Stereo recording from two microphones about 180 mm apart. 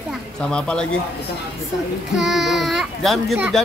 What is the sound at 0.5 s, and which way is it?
Speech, 5° left (ahead or behind).